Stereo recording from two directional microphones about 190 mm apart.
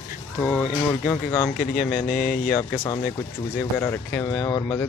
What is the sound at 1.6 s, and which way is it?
Speech, 45° left (ahead or behind).